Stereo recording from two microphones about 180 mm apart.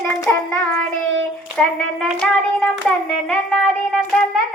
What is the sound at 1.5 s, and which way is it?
A child's voice, centre (ahead or behind).